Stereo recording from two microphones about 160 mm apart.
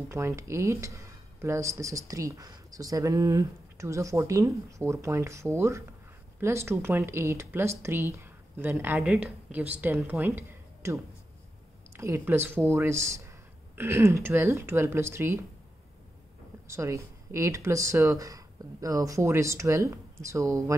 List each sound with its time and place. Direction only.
0.1 s a woman's voice: 15° right (ahead or behind)
12.0 s speech: 15° right (ahead or behind)
16.6 s speech: 20° right (ahead or behind)